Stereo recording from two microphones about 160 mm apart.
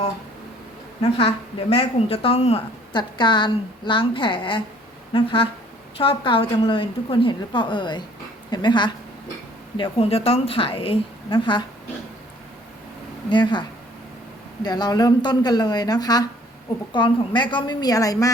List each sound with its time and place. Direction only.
1.7 s a woman's voice: 35° left (ahead or behind)
13.3 s speech: 30° left (ahead or behind)